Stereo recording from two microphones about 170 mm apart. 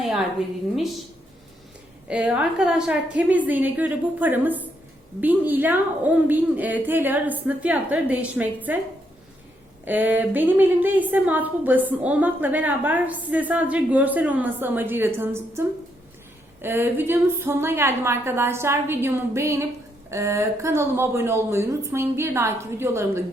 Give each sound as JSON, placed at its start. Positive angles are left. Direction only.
{"t": 2.0, "sound": "a woman's voice", "side_deg": -5}
{"t": 9.8, "sound": "a woman's voice", "side_deg": -10}